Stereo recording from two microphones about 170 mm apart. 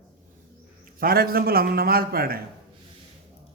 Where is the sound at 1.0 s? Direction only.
60° right (ahead or behind).